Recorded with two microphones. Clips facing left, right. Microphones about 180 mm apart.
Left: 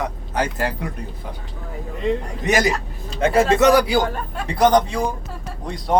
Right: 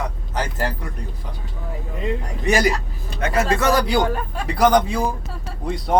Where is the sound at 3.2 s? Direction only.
30° left (ahead or behind).